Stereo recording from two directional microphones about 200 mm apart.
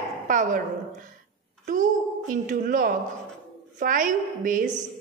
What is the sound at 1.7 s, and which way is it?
A woman's voice, 40° right (ahead or behind).